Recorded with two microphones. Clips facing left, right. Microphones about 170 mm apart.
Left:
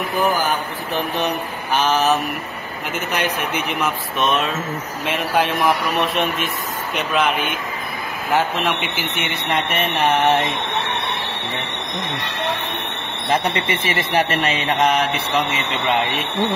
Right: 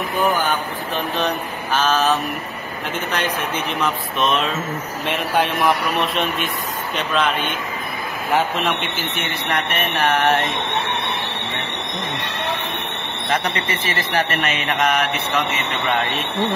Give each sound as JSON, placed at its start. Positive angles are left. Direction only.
{"t": 0.9, "sound": "mantra", "side_deg": 10}
{"t": 4.2, "sound": "speech", "side_deg": 0}
{"t": 7.0, "sound": "mantra", "side_deg": 10}
{"t": 8.3, "sound": "speech", "side_deg": 0}
{"t": 8.9, "sound": "speech", "side_deg": 15}
{"t": 13.3, "sound": "speech", "side_deg": 25}
{"t": 15.9, "sound": "speech", "side_deg": 20}